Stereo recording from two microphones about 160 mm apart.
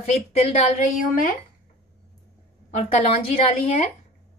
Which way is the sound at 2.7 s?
45° left (ahead or behind).